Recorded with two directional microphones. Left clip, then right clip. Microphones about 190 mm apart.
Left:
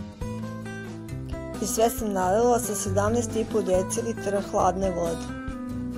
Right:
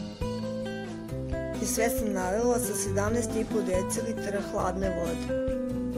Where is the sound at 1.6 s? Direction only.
10° left (ahead or behind).